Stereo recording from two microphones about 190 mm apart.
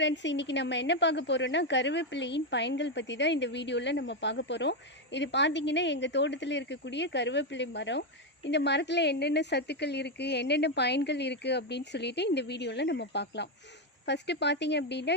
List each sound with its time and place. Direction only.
0.0 s a woman's voice: 70° left (ahead or behind)